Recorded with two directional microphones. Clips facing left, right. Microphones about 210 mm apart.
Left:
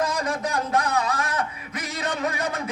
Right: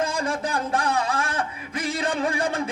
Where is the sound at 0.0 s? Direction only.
30° right (ahead or behind).